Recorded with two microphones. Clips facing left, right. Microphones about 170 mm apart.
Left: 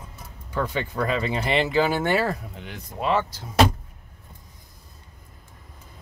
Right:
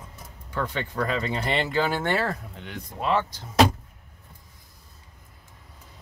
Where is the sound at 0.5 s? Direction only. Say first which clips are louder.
Left 2 dB; 5° left (ahead or behind).